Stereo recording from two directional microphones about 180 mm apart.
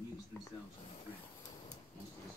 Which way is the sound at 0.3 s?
15° left (ahead or behind).